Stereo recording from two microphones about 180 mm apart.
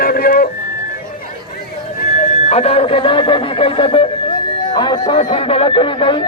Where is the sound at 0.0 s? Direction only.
55° left (ahead or behind).